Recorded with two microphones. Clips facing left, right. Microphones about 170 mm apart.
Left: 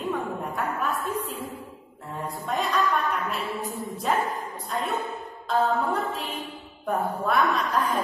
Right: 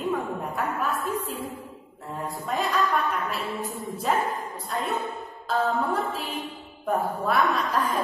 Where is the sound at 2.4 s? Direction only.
Centre (ahead or behind).